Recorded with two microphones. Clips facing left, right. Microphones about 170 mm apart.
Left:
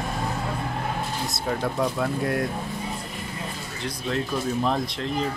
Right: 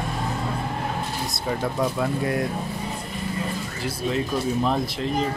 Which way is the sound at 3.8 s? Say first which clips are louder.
Right 2 dB; 5° right (ahead or behind).